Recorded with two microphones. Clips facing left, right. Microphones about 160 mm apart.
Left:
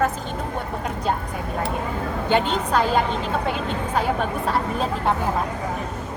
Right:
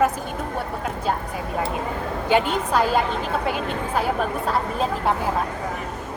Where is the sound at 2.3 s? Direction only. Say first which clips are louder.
Right 1 dB; 10° right (ahead or behind).